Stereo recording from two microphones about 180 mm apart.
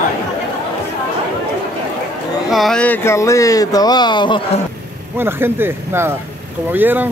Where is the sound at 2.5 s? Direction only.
Centre (ahead or behind); by 4.4 s 25° left (ahead or behind).